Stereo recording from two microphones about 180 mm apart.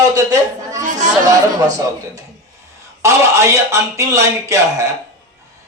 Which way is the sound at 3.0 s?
15° right (ahead or behind).